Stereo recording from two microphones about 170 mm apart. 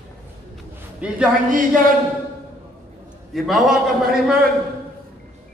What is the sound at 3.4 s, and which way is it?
A man's voice, centre (ahead or behind).